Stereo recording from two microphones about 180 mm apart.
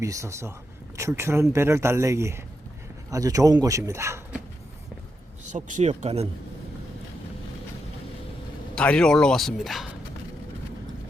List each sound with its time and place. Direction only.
0.0 s speech: 15° right (ahead or behind)
5.5 s speech: 45° right (ahead or behind)
8.7 s speech: 5° left (ahead or behind)